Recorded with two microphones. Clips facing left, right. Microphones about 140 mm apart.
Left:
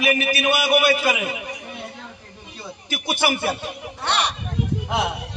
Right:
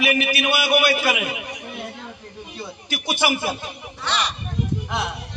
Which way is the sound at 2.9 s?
50° left (ahead or behind).